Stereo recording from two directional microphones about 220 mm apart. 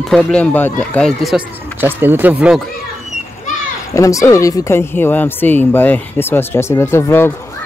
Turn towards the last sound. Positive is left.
turn(degrees=10)  # may be behind; listen again after turning